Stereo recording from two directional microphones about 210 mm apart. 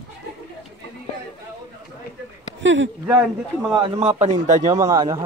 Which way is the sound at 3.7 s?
25° right (ahead or behind).